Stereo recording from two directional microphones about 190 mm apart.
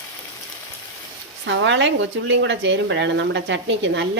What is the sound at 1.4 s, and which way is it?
Speech, 70° right (ahead or behind).